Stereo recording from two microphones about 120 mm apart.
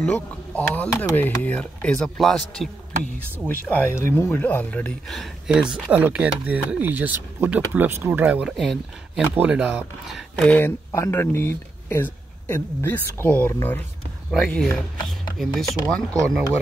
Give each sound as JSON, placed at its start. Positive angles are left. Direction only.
{"t": 0.0, "sound": "a man's voice", "side_deg": 10}
{"t": 3.3, "sound": "speech", "side_deg": 15}
{"t": 5.0, "sound": "speech", "side_deg": 0}
{"t": 8.5, "sound": "a man's voice", "side_deg": 0}
{"t": 9.3, "sound": "speech", "side_deg": -15}
{"t": 10.4, "sound": "a man's voice", "side_deg": 15}